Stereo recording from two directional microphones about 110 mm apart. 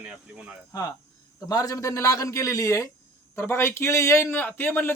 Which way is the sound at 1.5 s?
35° left (ahead or behind).